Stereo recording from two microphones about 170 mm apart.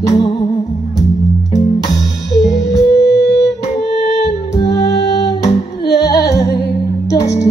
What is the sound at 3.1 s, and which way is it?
Music, 85° left.